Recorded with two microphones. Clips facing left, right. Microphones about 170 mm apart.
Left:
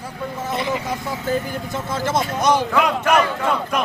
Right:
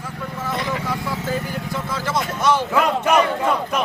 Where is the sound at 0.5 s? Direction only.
20° left (ahead or behind).